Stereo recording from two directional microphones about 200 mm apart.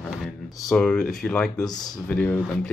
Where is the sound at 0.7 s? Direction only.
5° left (ahead or behind).